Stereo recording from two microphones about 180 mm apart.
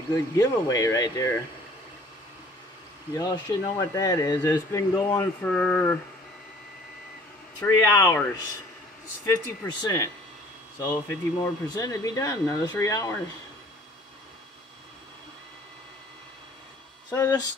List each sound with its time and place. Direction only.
0.1 s speech: 20° left (ahead or behind)
3.2 s speech: 20° left (ahead or behind)
7.6 s speech: 15° left (ahead or behind)
9.2 s speech: 15° left (ahead or behind)
17.1 s speech: 20° left (ahead or behind)